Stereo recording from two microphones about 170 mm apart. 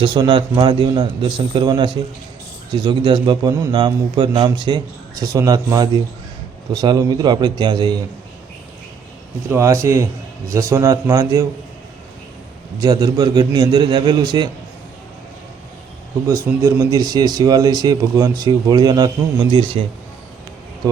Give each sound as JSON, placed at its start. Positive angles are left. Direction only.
{"t": 0.0, "sound": "speech", "side_deg": -30}
{"t": 9.5, "sound": "speech", "side_deg": -15}
{"t": 12.8, "sound": "speech", "side_deg": -25}
{"t": 16.2, "sound": "speech", "side_deg": -20}